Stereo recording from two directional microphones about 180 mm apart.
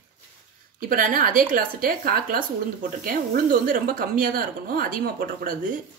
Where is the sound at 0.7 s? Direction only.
50° right (ahead or behind).